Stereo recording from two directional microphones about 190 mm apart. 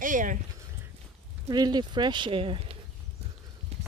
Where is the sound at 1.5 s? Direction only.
20° right (ahead or behind).